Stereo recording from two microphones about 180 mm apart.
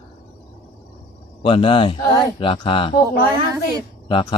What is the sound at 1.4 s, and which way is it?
Speech, 30° left (ahead or behind).